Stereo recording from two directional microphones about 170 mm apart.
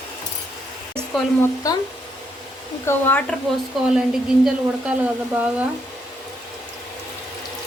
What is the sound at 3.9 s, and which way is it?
A woman's voice, 5° right (ahead or behind).